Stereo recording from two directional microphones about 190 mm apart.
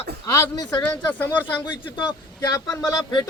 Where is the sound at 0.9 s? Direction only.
10° left (ahead or behind).